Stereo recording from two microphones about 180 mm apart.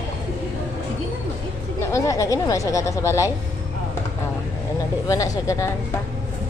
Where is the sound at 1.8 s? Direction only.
15° left (ahead or behind).